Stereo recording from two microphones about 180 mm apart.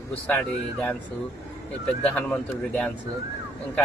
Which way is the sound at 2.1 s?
5° left (ahead or behind).